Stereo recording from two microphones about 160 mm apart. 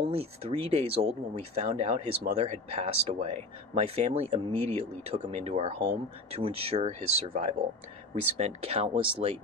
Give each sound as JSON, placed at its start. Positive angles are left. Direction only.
{"t": 0.0, "sound": "speech", "side_deg": -40}